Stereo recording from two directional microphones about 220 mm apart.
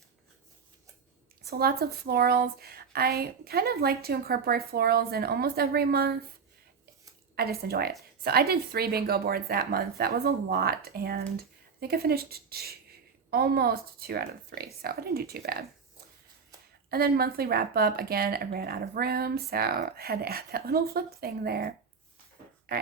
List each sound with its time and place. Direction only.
1.5 s speech: 45° right (ahead or behind)
7.3 s speech: 45° right (ahead or behind)
16.9 s speech: 45° right (ahead or behind)